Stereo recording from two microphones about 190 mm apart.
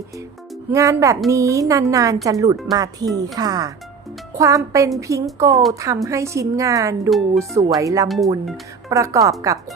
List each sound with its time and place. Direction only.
0.7 s a woman's voice: 15° right (ahead or behind)
8.0 s speech: centre (ahead or behind)
8.9 s a woman's voice: 15° right (ahead or behind)